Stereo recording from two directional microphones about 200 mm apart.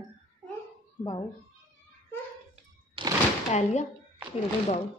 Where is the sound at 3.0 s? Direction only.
25° right (ahead or behind).